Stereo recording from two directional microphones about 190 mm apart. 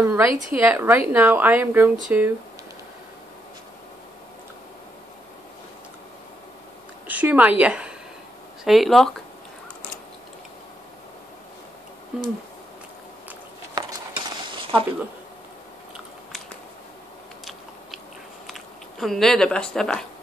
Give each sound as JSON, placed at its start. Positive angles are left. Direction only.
{"t": 0.0, "sound": "speech", "side_deg": -15}
{"t": 7.1, "sound": "a woman's voice", "side_deg": -10}
{"t": 12.1, "sound": "speech", "side_deg": -5}
{"t": 13.7, "sound": "cutlery", "side_deg": -25}
{"t": 18.5, "sound": "speech", "side_deg": 0}